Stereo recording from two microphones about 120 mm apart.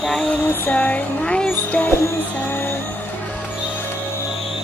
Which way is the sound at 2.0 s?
20° left (ahead or behind).